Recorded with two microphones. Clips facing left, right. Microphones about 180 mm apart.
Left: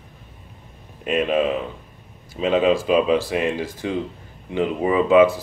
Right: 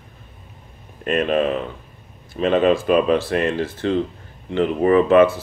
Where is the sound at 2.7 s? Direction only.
55° right (ahead or behind).